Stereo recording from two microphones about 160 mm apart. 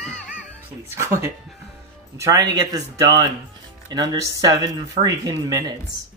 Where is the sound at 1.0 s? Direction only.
15° right (ahead or behind).